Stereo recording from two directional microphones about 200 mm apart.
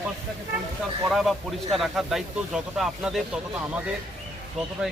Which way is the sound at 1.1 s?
Centre (ahead or behind).